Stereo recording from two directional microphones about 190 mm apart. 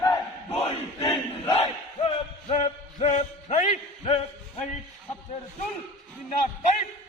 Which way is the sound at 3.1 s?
40° left (ahead or behind).